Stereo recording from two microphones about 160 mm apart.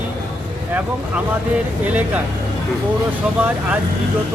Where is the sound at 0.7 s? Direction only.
10° right (ahead or behind).